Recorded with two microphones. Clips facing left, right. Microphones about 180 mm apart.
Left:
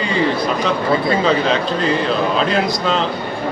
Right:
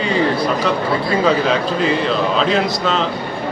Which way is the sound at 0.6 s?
5° right (ahead or behind).